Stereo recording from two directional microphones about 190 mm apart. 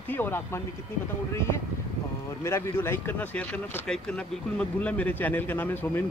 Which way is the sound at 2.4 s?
15° left (ahead or behind).